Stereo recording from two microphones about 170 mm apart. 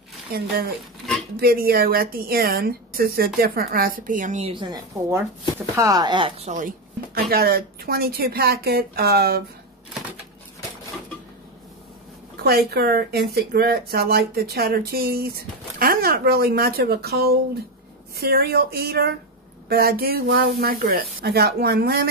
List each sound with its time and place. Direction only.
0.3 s a woman's voice: 60° right (ahead or behind)
0.7 s dishes: centre (ahead or behind)
1.3 s a woman's voice: 60° right (ahead or behind); by 6.7 s 45° right (ahead or behind)
7.2 s a woman's voice: 65° right (ahead or behind)
12.4 s a woman's voice: 65° right (ahead or behind)